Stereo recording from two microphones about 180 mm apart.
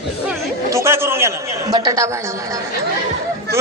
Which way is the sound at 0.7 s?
15° right (ahead or behind).